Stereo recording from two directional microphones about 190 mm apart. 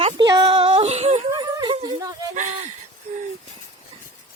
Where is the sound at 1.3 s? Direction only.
20° right (ahead or behind).